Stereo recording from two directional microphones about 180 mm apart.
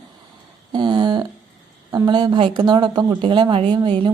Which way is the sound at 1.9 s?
25° right (ahead or behind).